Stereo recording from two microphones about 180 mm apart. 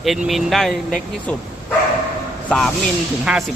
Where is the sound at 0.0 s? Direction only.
Centre (ahead or behind).